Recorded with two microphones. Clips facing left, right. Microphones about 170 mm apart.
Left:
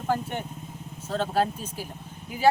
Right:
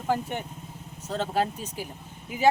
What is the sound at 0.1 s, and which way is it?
Speech, 15° right (ahead or behind).